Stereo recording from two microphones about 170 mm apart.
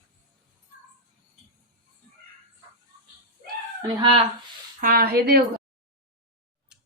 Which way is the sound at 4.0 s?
30° right (ahead or behind).